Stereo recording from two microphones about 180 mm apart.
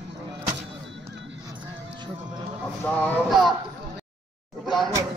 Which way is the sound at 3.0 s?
Centre (ahead or behind).